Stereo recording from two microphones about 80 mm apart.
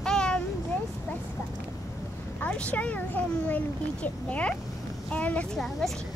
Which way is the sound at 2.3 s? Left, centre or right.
Centre.